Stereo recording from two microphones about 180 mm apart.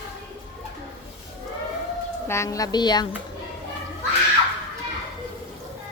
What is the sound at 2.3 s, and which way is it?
Speech, 15° left (ahead or behind).